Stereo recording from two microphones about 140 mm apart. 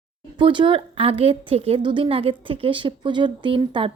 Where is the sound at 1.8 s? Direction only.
35° right (ahead or behind).